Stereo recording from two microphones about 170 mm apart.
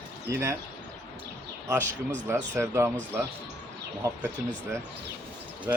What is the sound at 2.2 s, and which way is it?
Speech, 10° right (ahead or behind).